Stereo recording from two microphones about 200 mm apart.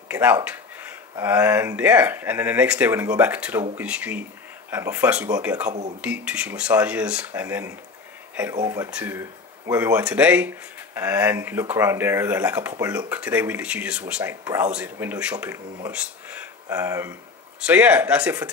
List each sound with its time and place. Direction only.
0.1 s speech: 10° right (ahead or behind)
5.7 s speech: 35° right (ahead or behind)
5.9 s speech: 5° right (ahead or behind)
14.4 s speech: 15° right (ahead or behind)